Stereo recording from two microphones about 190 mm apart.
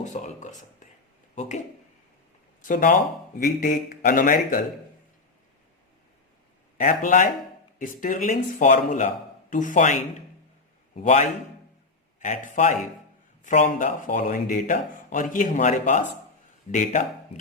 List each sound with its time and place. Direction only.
0.0 s speech: 40° left (ahead or behind)
2.6 s a man's voice: 45° left (ahead or behind)
6.7 s a man's voice: 45° left (ahead or behind)